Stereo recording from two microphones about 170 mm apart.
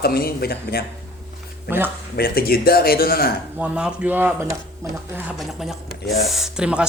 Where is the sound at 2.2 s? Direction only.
60° left (ahead or behind).